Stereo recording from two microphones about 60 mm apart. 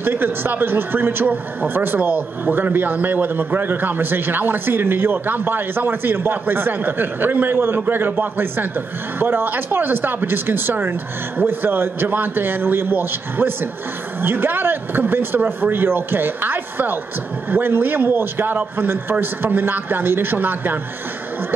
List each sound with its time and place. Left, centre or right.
0.0 s speech: right